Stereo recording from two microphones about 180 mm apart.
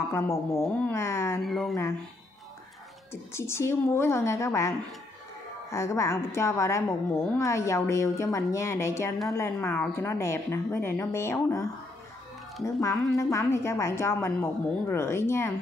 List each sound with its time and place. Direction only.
0.1 s a woman's voice: 15° left (ahead or behind)
1.4 s speech: centre (ahead or behind)
3.1 s a woman's voice: 15° left (ahead or behind)
12.6 s a woman's voice: 15° left (ahead or behind)